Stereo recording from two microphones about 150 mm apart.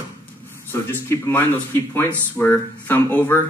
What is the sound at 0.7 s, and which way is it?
A man's voice, 15° left (ahead or behind).